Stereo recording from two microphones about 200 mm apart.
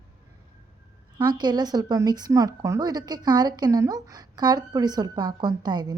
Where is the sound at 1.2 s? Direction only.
20° right (ahead or behind).